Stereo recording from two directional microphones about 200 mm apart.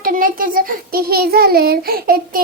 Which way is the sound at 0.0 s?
45° right (ahead or behind).